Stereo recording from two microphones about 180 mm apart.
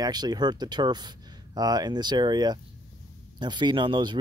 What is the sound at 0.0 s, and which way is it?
Speech, 20° right (ahead or behind).